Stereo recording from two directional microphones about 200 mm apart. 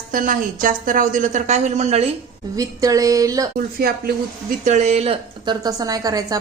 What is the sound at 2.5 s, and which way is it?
Speech, 15° right (ahead or behind).